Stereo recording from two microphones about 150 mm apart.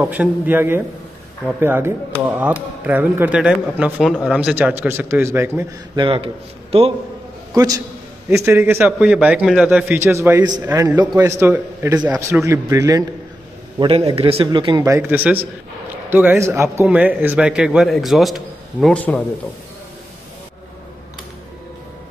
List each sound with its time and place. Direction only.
0.0 s speech: 10° right (ahead or behind)
5.9 s speech: 35° right (ahead or behind)
7.5 s a man's voice: 25° right (ahead or behind); by 9.9 s 5° right (ahead or behind)
9.9 s speech: 15° right (ahead or behind)
13.7 s speech: 35° right (ahead or behind)
14.9 s a man's voice: 15° right (ahead or behind); by 19.2 s 10° left (ahead or behind)